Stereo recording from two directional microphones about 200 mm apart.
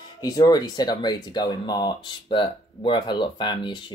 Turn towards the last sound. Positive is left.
turn(degrees=25)  # may be behind; listen again after turning